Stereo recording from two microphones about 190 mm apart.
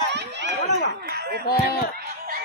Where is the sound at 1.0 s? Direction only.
55° right (ahead or behind).